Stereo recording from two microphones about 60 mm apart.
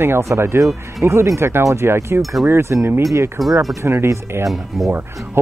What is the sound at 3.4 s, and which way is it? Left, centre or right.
Speech, centre.